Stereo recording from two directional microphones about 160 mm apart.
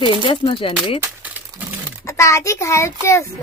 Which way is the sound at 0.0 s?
30° left (ahead or behind).